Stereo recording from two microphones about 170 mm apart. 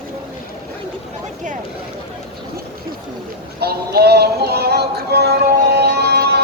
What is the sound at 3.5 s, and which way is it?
Music, 70° right (ahead or behind).